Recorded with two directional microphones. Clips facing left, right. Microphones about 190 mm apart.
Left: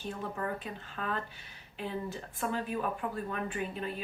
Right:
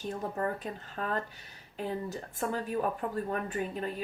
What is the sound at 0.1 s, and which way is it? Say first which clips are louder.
Speech: right 3 dB; 40° right (ahead or behind).